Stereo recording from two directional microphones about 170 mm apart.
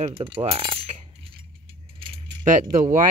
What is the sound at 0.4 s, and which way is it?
Coin, 35° right (ahead or behind).